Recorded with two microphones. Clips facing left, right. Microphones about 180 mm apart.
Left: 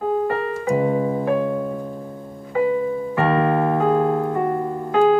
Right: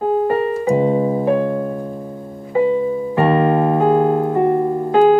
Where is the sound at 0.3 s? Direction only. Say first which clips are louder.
Right 5 dB; 35° right (ahead or behind).